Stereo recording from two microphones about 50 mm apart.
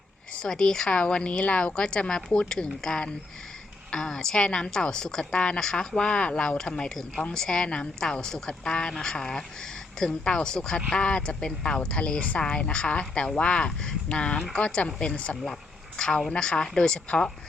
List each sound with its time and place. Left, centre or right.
0.4 s a woman's voice: centre
14.3 s a woman's voice: centre